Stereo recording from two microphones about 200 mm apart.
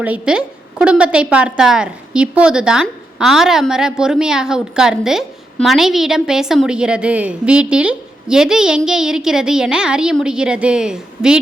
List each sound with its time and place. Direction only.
0.0 s a woman's voice: 5° right (ahead or behind)